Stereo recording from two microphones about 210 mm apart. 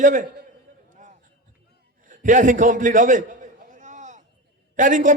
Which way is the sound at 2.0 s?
40° right (ahead or behind).